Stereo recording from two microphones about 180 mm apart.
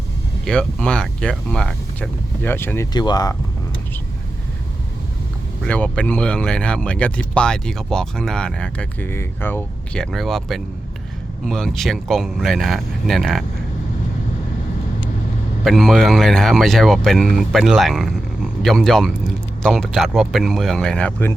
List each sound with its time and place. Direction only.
0.4 s speech: 5° left (ahead or behind)
2.9 s speech: 25° left (ahead or behind)
5.6 s speech: 5° left (ahead or behind)
15.6 s speech: centre (ahead or behind)